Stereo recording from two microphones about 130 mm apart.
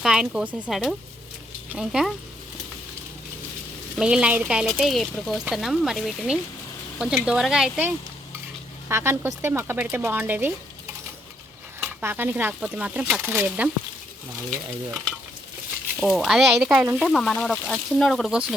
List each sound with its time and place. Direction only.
0.0 s speech: 5° right (ahead or behind)
3.9 s speech: 5° right (ahead or behind)
8.9 s speech: 20° right (ahead or behind)
11.8 s speech: 10° right (ahead or behind)
16.0 s speech: centre (ahead or behind)
16.8 s speech: 15° right (ahead or behind)
17.1 s speech: centre (ahead or behind)